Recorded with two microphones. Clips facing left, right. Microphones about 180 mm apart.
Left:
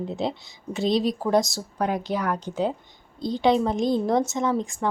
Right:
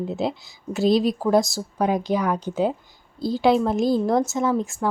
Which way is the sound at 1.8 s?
10° right (ahead or behind).